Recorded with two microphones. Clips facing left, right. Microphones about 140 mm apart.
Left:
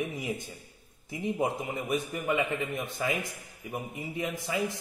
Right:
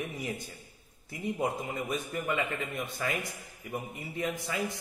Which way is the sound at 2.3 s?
20° left (ahead or behind).